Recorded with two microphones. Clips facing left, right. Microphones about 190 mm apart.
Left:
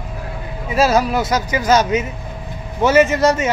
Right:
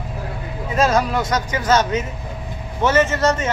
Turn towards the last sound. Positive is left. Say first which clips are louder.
# left 4 dB
turn(degrees=10)  # may be behind; listen again after turning